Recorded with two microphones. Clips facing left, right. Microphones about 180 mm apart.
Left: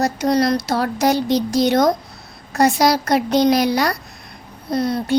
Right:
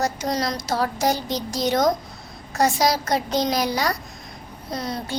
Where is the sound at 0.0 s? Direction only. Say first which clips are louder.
Left 7 dB; 65° left (ahead or behind).